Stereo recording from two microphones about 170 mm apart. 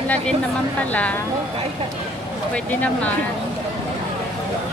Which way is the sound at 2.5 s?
5° left (ahead or behind).